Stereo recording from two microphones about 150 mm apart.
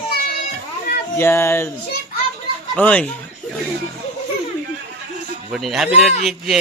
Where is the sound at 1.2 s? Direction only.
15° left (ahead or behind).